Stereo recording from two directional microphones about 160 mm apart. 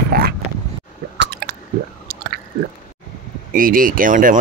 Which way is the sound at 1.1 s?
90° right.